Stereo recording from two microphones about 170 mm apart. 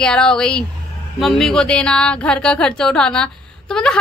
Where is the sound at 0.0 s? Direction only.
5° left (ahead or behind).